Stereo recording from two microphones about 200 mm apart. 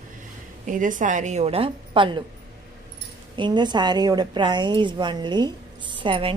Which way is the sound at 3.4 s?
20° right (ahead or behind).